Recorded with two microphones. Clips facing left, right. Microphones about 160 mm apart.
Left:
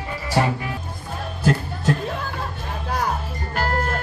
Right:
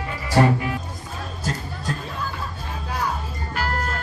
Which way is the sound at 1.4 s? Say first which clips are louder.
Left 9 dB; 70° left (ahead or behind).